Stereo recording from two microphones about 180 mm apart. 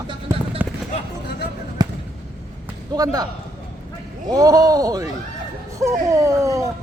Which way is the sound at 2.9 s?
20° right (ahead or behind).